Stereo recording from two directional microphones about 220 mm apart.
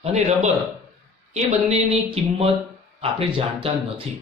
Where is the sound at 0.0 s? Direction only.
30° right (ahead or behind).